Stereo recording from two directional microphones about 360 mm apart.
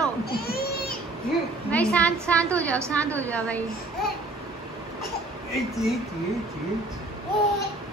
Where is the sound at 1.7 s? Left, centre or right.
Centre.